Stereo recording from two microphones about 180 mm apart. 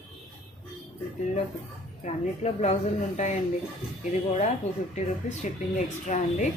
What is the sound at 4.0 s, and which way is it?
Speech, 40° left (ahead or behind).